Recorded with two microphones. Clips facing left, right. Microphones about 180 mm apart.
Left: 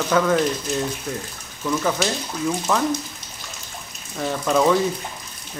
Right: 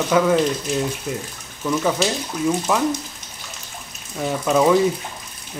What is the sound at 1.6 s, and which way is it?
Speech, 5° right (ahead or behind).